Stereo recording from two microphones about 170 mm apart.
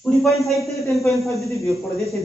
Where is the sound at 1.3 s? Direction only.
20° left (ahead or behind).